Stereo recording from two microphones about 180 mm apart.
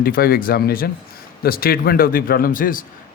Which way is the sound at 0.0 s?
55° left (ahead or behind).